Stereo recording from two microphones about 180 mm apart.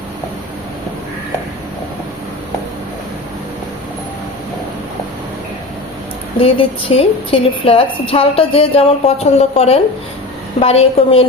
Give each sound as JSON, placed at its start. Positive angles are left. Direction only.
{"t": 6.4, "sound": "a woman's voice", "side_deg": 30}